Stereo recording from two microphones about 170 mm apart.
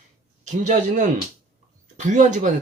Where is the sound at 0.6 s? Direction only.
45° right (ahead or behind).